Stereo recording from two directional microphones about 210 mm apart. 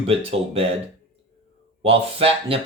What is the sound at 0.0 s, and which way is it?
Speech, 25° right (ahead or behind).